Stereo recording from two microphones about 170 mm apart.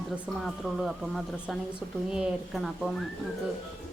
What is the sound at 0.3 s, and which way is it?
Speech, centre (ahead or behind).